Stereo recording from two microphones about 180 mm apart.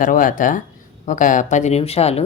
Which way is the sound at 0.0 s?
50° left (ahead or behind).